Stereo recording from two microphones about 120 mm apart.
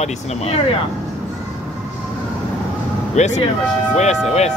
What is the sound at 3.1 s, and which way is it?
Speech, 75° left (ahead or behind).